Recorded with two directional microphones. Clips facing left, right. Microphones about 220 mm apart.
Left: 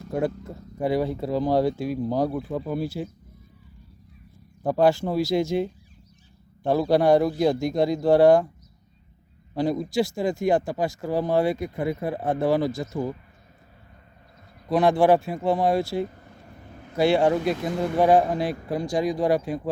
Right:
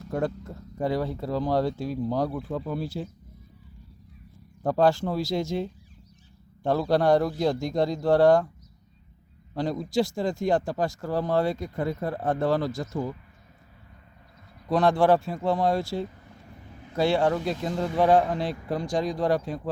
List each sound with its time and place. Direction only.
0.8 s speech: 10° left (ahead or behind)
4.6 s speech: 10° left (ahead or behind)
9.6 s speech: 10° left (ahead or behind)
14.7 s speech: 10° left (ahead or behind)
16.0 s vehicle: 50° left (ahead or behind)
17.0 s speech: 15° left (ahead or behind)
17.5 s speech: 65° left (ahead or behind)
17.9 s speech: 10° left (ahead or behind)